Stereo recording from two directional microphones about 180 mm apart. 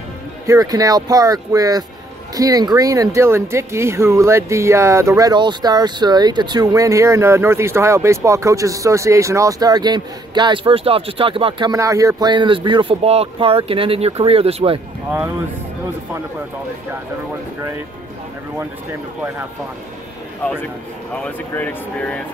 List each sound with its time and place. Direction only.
0.5 s speech: 20° right (ahead or behind)
15.0 s speech: 10° right (ahead or behind)
21.1 s speech: 5° left (ahead or behind)